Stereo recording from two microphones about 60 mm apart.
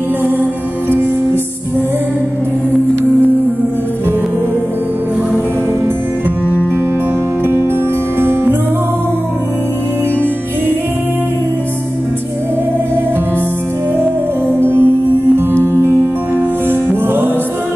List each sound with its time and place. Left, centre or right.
8.2 s music: right
14.6 s music: right
15.6 s music: right
16.6 s music: right